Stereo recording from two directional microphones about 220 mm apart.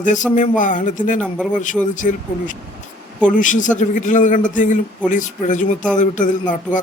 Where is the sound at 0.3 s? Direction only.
35° left (ahead or behind).